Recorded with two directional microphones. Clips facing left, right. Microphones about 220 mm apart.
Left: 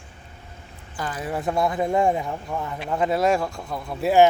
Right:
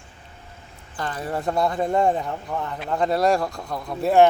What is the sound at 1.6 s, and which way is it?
Speech, 20° left (ahead or behind).